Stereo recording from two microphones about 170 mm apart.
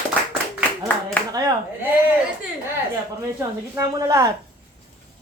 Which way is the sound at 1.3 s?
20° right (ahead or behind).